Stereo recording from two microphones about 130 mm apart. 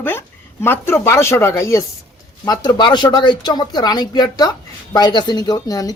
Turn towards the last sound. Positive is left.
turn(degrees=30)  # may be behind; listen again after turning